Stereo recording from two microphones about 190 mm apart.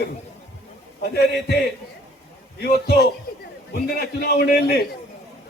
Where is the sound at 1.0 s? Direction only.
60° left (ahead or behind).